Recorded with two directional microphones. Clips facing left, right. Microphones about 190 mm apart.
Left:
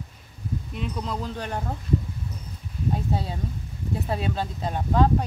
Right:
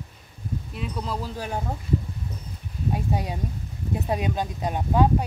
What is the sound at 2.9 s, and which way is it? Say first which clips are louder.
Speech: even; 15° right (ahead or behind).